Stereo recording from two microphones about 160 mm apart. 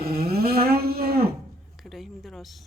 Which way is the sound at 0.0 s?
75° right (ahead or behind).